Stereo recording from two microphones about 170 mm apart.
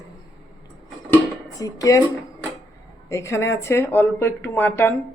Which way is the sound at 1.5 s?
20° left (ahead or behind).